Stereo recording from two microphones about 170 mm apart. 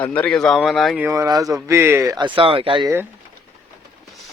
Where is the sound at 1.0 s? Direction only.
20° right (ahead or behind).